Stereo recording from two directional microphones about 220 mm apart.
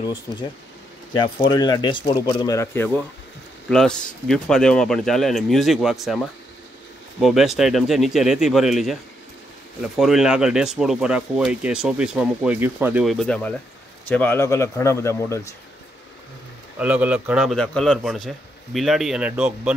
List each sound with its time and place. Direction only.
1.1 s speech: 20° left (ahead or behind); by 8.9 s centre (ahead or behind)
9.9 s speech: centre (ahead or behind)
16.7 s speech: 5° right (ahead or behind)